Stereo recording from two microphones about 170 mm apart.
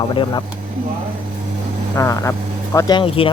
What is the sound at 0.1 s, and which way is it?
Speech, 30° left (ahead or behind).